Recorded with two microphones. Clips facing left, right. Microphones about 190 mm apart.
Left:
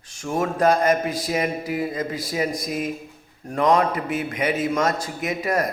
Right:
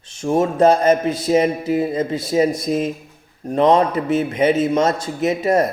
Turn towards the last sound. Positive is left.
turn(degrees=-25)  # may be behind; listen again after turning